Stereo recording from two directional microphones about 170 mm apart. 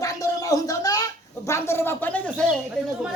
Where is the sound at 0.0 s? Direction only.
20° left (ahead or behind).